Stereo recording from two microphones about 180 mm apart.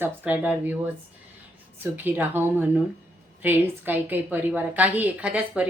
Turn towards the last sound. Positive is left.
turn(degrees=-5)  # may be behind; listen again after turning